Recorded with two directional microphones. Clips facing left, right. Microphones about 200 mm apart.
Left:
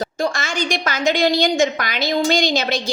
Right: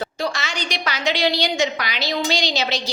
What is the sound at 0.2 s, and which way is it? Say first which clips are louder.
A woman's voice: left 6 dB; 50° left (ahead or behind).